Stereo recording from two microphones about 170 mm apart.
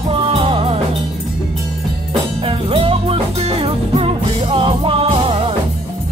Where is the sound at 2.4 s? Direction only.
35° right (ahead or behind).